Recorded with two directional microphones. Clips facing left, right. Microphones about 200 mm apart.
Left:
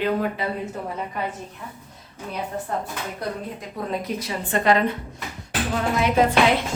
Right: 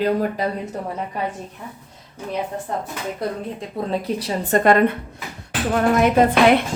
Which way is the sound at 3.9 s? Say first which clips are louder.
Right 4 dB; 30° right (ahead or behind).